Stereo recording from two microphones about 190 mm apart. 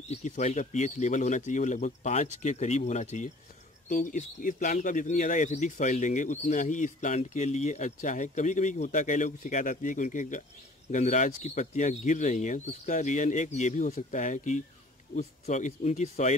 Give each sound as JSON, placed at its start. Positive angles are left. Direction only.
{"t": 0.1, "sound": "speech", "side_deg": 40}